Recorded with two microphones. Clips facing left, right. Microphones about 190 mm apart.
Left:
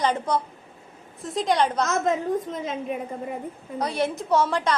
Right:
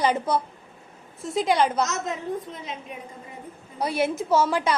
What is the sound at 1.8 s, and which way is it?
A woman's voice, 50° left (ahead or behind).